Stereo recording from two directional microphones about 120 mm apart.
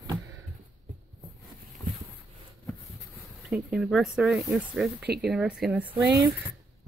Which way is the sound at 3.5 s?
5° right (ahead or behind).